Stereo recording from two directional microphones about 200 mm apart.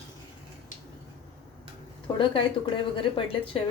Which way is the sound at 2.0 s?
25° left (ahead or behind).